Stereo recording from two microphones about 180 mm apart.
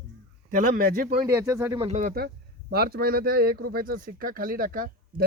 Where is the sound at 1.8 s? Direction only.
40° right (ahead or behind).